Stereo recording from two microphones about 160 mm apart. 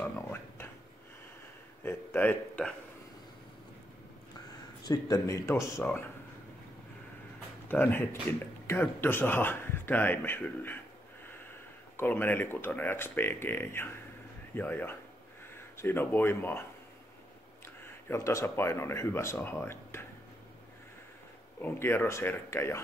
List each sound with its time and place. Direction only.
0.0 s a sound: 10° left (ahead or behind)
1.8 s a man's voice: 10° left (ahead or behind)
4.8 s speech: 25° left (ahead or behind)
7.6 s speech: 15° left (ahead or behind)
12.0 s speech: 15° left (ahead or behind)
17.8 s speech: 15° left (ahead or behind)
21.5 s speech: 15° left (ahead or behind)